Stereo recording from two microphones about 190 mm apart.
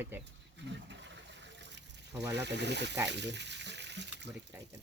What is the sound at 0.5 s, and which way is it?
Water, 70° right (ahead or behind).